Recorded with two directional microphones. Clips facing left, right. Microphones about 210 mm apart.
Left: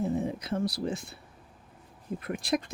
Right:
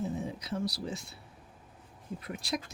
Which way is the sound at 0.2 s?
55° left (ahead or behind).